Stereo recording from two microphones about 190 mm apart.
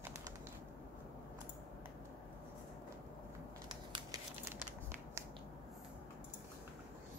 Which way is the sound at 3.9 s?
20° right (ahead or behind).